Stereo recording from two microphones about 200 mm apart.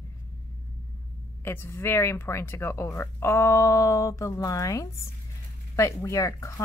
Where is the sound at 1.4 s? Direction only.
10° left (ahead or behind).